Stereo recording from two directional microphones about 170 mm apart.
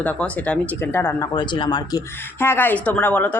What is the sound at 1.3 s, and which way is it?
Speech, 30° left (ahead or behind).